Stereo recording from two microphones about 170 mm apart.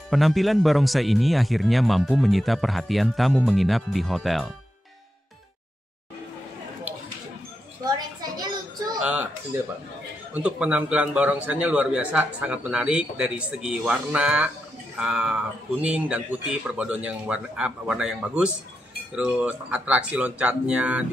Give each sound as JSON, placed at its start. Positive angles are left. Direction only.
{"t": 0.1, "sound": "speech", "side_deg": 0}
{"t": 7.8, "sound": "a sound", "side_deg": -25}
{"t": 9.0, "sound": "speech", "side_deg": -10}
{"t": 10.3, "sound": "a man's voice", "side_deg": -5}